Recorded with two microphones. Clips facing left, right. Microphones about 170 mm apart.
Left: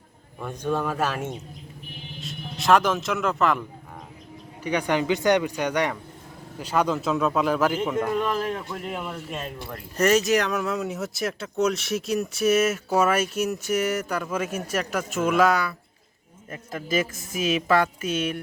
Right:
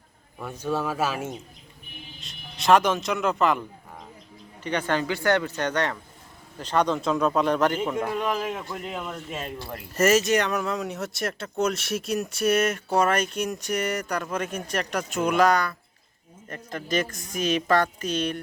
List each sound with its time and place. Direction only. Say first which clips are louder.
0.3 s speech: left 1 dB; 5° right (ahead or behind)
4.6 s speech: left 2 dB; 10° left (ahead or behind)